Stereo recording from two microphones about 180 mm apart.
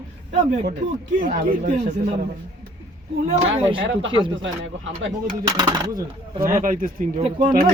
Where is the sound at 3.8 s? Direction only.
90° right.